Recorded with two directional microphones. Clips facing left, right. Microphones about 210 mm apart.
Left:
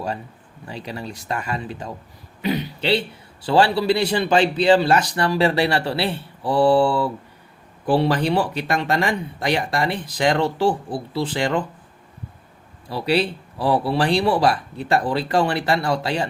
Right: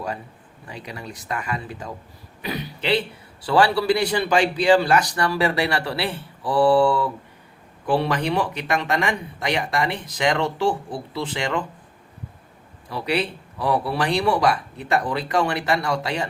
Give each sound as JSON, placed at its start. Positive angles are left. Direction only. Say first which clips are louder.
{"t": 0.7, "sound": "a man's voice", "louder": "left 4 dB", "side_deg": 30}
{"t": 12.9, "sound": "speech", "louder": "left 4 dB", "side_deg": 30}